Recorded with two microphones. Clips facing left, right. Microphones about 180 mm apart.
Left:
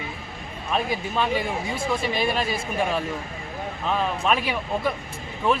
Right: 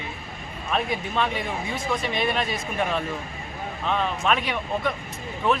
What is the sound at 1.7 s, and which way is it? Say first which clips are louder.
Speech: left 1 dB; 30° left (ahead or behind).